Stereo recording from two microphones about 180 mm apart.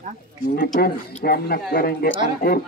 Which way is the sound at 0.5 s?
55° left (ahead or behind).